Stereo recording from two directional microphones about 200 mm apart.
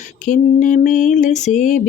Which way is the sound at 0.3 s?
40° left (ahead or behind).